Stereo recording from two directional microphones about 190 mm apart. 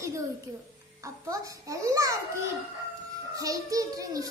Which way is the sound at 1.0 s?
15° right (ahead or behind).